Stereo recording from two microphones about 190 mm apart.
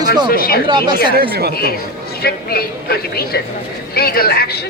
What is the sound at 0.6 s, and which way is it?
Speech, 25° right (ahead or behind).